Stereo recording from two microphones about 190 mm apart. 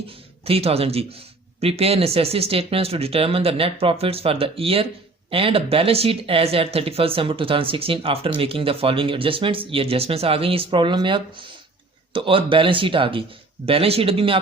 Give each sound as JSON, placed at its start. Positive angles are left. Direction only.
{"t": 0.4, "sound": "speech", "side_deg": -30}